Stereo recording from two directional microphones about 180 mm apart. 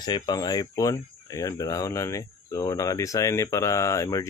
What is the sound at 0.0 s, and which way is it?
Speech, 25° left (ahead or behind).